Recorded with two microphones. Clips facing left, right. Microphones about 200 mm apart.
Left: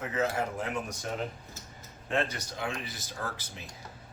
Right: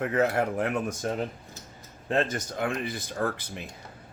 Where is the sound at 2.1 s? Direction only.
45° right (ahead or behind).